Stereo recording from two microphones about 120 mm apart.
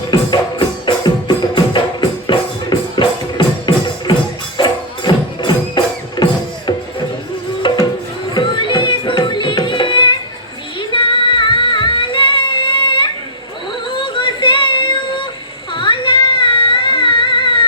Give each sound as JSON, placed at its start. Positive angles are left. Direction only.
{"t": 1.5, "sound": "music", "side_deg": 40}